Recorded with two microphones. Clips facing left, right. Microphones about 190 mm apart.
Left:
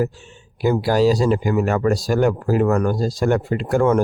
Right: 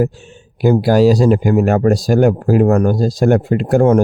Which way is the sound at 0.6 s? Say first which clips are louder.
Right 5 dB; 50° right (ahead or behind).